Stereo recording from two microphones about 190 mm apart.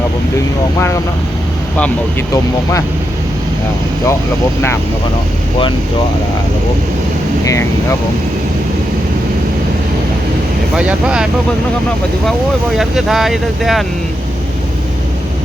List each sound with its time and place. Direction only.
7.4 s speech: 15° left (ahead or behind)
10.8 s speech: 5° right (ahead or behind)
12.7 s speech: centre (ahead or behind)